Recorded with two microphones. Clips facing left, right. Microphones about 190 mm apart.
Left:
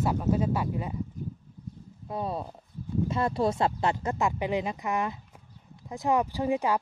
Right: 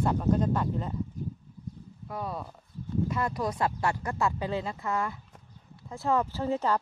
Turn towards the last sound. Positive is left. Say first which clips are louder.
# left 2 dB
turn(degrees=15)  # may be behind; listen again after turning